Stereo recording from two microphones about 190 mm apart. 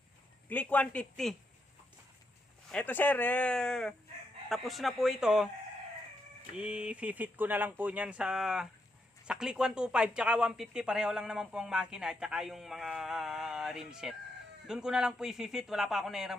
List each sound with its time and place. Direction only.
0.4 s speech: 10° left (ahead or behind)
2.6 s speech: 10° left (ahead or behind)
6.6 s speech: 5° right (ahead or behind)